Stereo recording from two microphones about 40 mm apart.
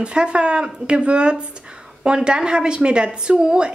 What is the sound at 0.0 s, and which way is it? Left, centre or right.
A woman's voice, right.